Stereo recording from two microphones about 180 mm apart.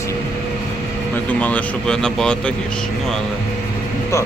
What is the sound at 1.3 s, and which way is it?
Speech, 10° left (ahead or behind).